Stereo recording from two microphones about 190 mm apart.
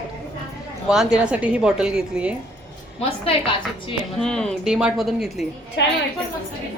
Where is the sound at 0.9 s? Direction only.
5° right (ahead or behind).